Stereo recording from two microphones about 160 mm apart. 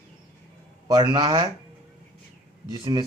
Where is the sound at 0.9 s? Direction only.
25° right (ahead or behind).